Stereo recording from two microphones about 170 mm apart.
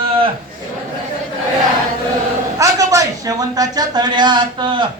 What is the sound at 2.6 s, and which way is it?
A man's voice, 20° right (ahead or behind).